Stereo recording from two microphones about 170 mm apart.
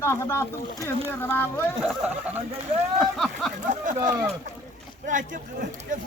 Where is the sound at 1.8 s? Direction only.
5° right (ahead or behind).